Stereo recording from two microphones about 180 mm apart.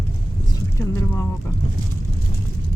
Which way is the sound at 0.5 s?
15° left (ahead or behind).